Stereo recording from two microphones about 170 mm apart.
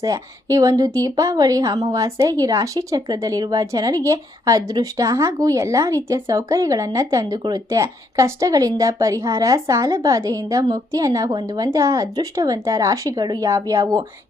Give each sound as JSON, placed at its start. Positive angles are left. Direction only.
{"t": 0.0, "sound": "a woman's voice", "side_deg": -20}